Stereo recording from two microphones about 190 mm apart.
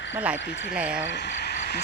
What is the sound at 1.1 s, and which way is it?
Frog, 65° left (ahead or behind).